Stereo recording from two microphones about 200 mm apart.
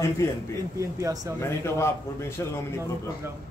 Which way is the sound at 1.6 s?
15° left (ahead or behind).